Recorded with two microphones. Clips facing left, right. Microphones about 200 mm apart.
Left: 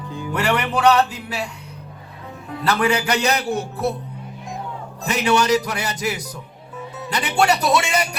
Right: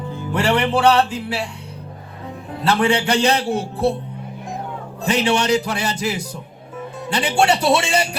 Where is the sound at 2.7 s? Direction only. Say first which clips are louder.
Right 2 dB; 30° right (ahead or behind).